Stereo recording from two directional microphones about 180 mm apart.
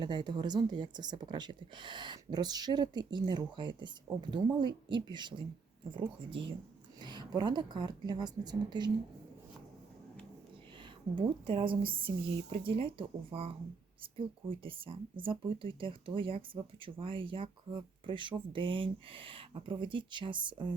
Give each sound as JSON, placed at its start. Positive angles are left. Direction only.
{"t": 0.0, "sound": "speech", "side_deg": -25}
{"t": 11.1, "sound": "speech", "side_deg": -30}
{"t": 14.6, "sound": "speech", "side_deg": -30}